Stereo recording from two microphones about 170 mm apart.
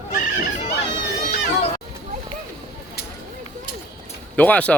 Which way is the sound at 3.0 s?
65° left (ahead or behind).